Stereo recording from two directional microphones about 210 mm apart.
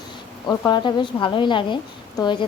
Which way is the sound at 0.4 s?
20° left (ahead or behind).